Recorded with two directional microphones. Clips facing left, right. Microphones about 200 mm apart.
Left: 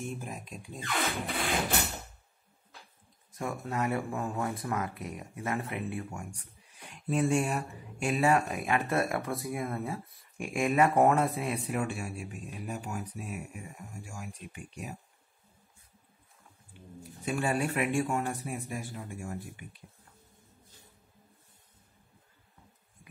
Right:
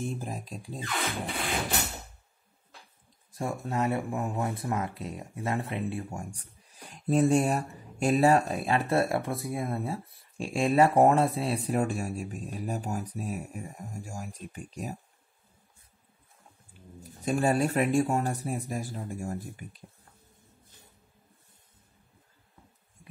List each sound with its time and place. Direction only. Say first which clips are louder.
0.0 s speech: right 4 dB; 35° right (ahead or behind)
3.3 s speech: right 3 dB; 25° right (ahead or behind)
17.2 s speech: right 5 dB; 40° right (ahead or behind)